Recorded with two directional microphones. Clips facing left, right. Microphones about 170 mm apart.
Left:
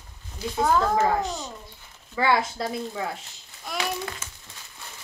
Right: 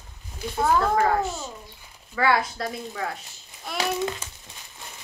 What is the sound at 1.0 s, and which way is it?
A woman's voice, 15° left (ahead or behind).